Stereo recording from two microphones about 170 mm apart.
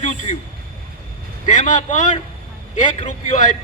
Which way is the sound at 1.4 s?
45° left (ahead or behind).